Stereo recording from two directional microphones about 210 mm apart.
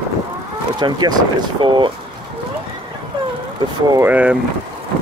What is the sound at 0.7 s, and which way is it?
Speech, 20° right (ahead or behind).